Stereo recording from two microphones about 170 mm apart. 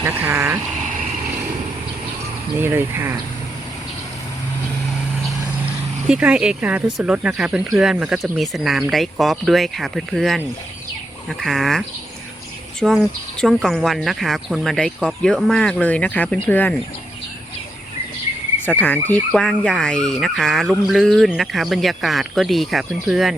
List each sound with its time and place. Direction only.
0.0 s speech: 10° right (ahead or behind)
2.6 s speech: 10° right (ahead or behind)
6.1 s speech: 5° right (ahead or behind)
12.8 s speech: 5° left (ahead or behind)
18.6 s speech: 10° left (ahead or behind)